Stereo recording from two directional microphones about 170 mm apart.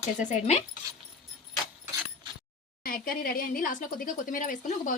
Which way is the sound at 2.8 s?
55° left (ahead or behind).